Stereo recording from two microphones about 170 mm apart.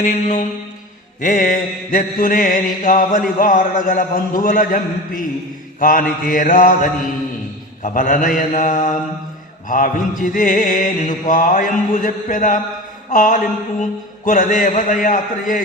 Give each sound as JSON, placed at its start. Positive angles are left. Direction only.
{"t": 0.0, "sound": "mantra", "side_deg": 50}